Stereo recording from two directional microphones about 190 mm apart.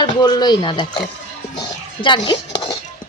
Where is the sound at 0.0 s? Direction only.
20° left (ahead or behind).